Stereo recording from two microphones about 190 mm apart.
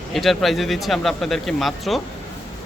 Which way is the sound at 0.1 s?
Centre (ahead or behind).